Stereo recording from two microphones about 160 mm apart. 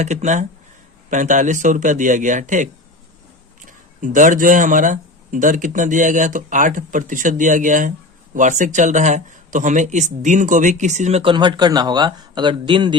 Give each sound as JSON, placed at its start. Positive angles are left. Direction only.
{"t": 0.0, "sound": "speech", "side_deg": -50}
{"t": 3.7, "sound": "speech", "side_deg": -55}
{"t": 11.2, "sound": "a man's voice", "side_deg": -30}